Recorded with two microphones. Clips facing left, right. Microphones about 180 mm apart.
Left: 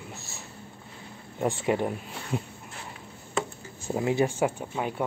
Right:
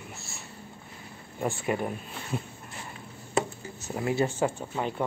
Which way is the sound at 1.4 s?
20° left (ahead or behind).